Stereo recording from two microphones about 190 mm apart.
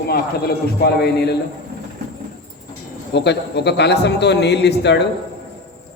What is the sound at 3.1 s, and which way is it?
A man's voice, 60° left (ahead or behind).